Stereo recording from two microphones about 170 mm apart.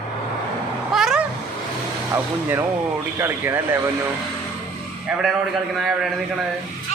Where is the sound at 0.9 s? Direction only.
5° right (ahead or behind).